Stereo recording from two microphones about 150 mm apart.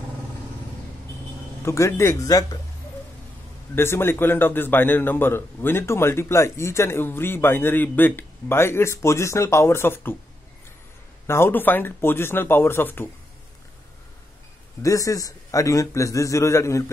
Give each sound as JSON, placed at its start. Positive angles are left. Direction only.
{"t": 1.6, "sound": "a man's voice", "side_deg": 20}
{"t": 3.7, "sound": "a man's voice", "side_deg": 15}
{"t": 11.2, "sound": "a man's voice", "side_deg": 15}
{"t": 14.8, "sound": "a man's voice", "side_deg": 20}